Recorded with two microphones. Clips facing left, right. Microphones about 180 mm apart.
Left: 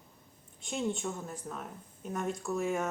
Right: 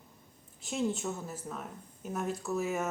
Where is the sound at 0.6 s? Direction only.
Centre (ahead or behind).